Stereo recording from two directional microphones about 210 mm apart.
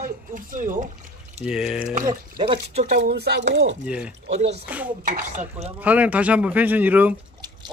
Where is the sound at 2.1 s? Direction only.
25° right (ahead or behind).